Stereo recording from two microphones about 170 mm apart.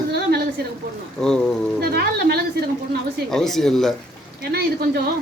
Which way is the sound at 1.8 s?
65° right (ahead or behind).